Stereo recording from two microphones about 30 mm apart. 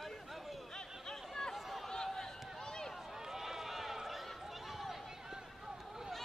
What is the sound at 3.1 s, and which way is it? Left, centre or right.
Run, centre.